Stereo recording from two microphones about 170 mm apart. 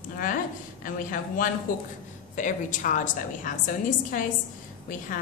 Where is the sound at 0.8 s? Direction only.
55° left (ahead or behind).